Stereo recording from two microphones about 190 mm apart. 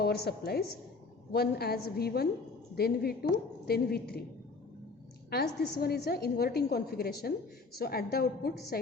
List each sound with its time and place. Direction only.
0.0 s a woman's voice: 55° left (ahead or behind)
5.3 s a woman's voice: 55° left (ahead or behind)